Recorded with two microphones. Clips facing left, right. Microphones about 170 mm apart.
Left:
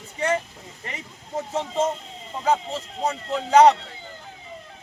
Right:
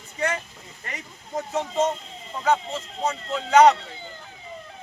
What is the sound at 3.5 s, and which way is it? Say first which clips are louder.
Speech: left 1 dB; 30° left (ahead or behind).